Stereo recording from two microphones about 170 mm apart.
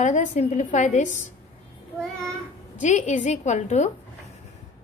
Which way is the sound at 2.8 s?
45° left (ahead or behind).